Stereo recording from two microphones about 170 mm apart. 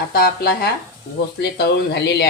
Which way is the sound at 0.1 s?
65° left (ahead or behind).